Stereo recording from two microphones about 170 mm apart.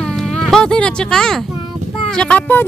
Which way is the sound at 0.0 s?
5° left (ahead or behind).